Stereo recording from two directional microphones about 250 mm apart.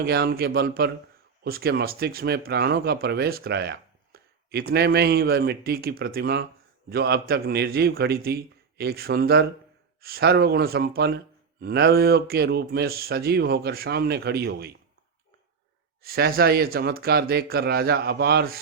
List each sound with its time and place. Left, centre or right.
0.0 s speech: right
16.0 s speech: right